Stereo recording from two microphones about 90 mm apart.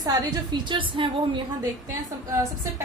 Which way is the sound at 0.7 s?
65° right (ahead or behind).